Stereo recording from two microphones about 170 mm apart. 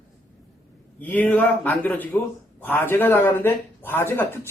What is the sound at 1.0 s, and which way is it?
Speech, 10° left (ahead or behind).